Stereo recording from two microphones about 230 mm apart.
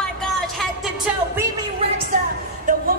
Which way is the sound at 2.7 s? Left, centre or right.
Right.